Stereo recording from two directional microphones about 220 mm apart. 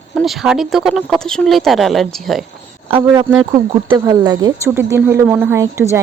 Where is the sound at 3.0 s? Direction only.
15° right (ahead or behind).